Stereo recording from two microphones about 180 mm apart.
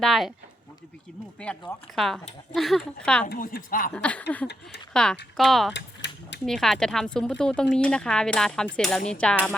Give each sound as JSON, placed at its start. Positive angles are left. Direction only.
{"t": 0.0, "sound": "speech", "side_deg": 0}
{"t": 1.4, "sound": "speech", "side_deg": 5}
{"t": 3.2, "sound": "a woman's voice", "side_deg": 55}
{"t": 3.9, "sound": "a sound", "side_deg": 5}
{"t": 5.4, "sound": "speech", "side_deg": 0}
{"t": 5.7, "sound": "mechanisms", "side_deg": 80}
{"t": 6.4, "sound": "speech", "side_deg": 0}